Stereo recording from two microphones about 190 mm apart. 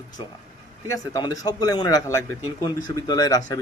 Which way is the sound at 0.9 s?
20° left (ahead or behind).